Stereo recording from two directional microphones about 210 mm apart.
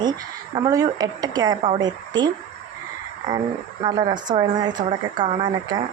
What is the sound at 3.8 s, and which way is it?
Speech, 20° right (ahead or behind).